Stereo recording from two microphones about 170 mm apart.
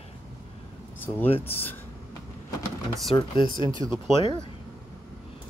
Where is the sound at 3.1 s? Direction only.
30° left (ahead or behind).